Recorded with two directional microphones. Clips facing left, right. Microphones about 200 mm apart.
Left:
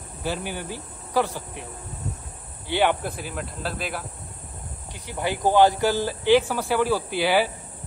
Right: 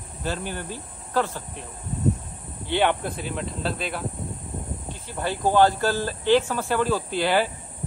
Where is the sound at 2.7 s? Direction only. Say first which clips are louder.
Even; 5° left (ahead or behind).